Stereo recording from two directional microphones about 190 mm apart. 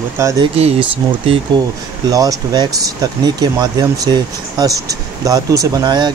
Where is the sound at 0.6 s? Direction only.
30° right (ahead or behind).